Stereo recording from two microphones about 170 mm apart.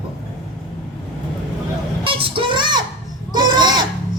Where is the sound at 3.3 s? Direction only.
25° right (ahead or behind).